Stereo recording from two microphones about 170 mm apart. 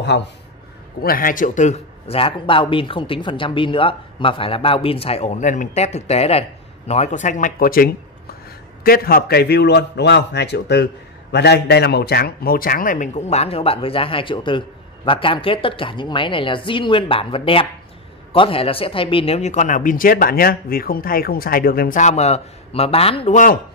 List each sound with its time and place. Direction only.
0.1 s a man's voice: 90° left
1.0 s a man's voice: 55° left (ahead or behind)